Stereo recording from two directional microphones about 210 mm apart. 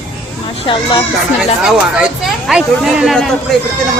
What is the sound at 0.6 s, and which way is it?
Speech, 25° left (ahead or behind).